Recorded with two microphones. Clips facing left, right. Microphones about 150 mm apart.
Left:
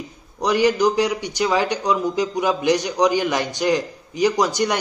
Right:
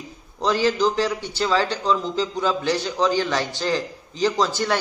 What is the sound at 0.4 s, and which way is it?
A man's voice, 15° left (ahead or behind).